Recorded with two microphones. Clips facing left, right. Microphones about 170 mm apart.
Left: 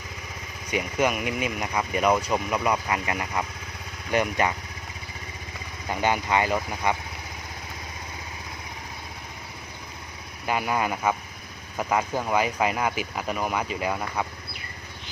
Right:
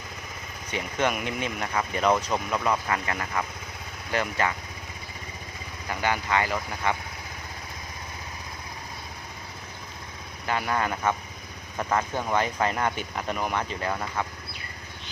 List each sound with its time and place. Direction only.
0.7 s speech: 10° left (ahead or behind)
5.9 s speech: 20° left (ahead or behind)
10.4 s speech: 15° left (ahead or behind)